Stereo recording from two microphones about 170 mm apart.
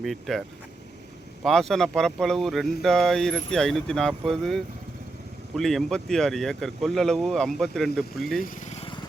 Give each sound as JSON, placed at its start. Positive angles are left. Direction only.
{"t": 0.0, "sound": "speech", "side_deg": 0}
{"t": 1.5, "sound": "speech", "side_deg": 0}
{"t": 8.4, "sound": "vehicle", "side_deg": 45}